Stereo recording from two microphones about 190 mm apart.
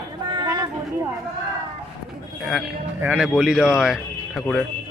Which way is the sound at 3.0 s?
5° right (ahead or behind).